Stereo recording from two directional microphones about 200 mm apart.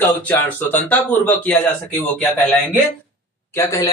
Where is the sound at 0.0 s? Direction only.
10° left (ahead or behind).